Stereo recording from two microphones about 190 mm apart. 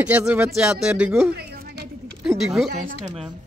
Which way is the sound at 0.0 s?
5° right (ahead or behind).